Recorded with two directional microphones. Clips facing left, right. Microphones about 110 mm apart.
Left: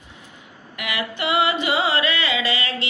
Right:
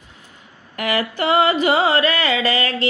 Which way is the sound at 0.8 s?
40° right (ahead or behind).